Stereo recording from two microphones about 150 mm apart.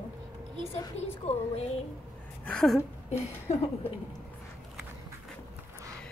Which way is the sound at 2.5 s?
Centre (ahead or behind).